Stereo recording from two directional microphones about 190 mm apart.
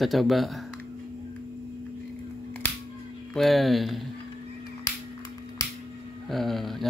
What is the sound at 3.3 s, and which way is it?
Speech, centre (ahead or behind).